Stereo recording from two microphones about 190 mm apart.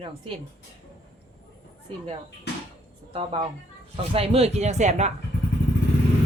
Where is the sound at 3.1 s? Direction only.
30° right (ahead or behind).